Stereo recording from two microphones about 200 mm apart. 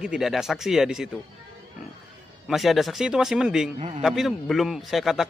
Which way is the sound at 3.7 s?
30° right (ahead or behind).